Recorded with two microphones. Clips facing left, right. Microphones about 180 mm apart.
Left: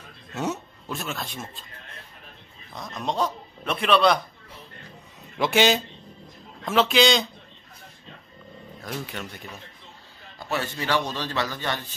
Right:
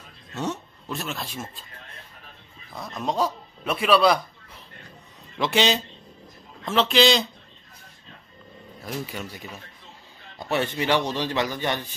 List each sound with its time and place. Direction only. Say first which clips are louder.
0.4 s speech: left 1 dB; 5° left (ahead or behind)
2.7 s speech: right 1 dB; 5° right (ahead or behind)
5.4 s a man's voice: left 2 dB; 5° left (ahead or behind)
8.8 s a man's voice: right 1 dB; 5° right (ahead or behind)
10.5 s a man's voice: right 3 dB; 20° right (ahead or behind)